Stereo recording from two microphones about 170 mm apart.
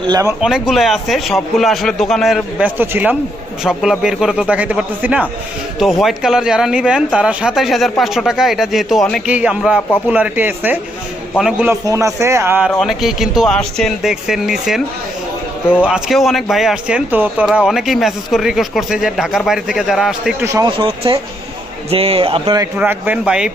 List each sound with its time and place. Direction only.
0.1 s speech: 20° right (ahead or behind)
0.4 s speech: centre (ahead or behind)
11.7 s speech: 20° right (ahead or behind)
12.7 s speech: centre (ahead or behind)
20.4 s speech: 20° right (ahead or behind)
20.7 s speech: 35° right (ahead or behind)
22.8 s speech: 10° right (ahead or behind)